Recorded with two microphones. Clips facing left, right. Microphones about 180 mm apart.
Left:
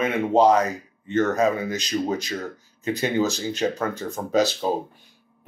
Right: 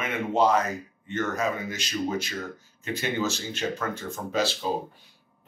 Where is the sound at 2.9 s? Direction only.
40° left (ahead or behind).